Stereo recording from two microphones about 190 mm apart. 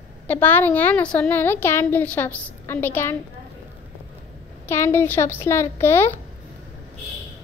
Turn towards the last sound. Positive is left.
turn(degrees=10)  # may be behind; listen again after turning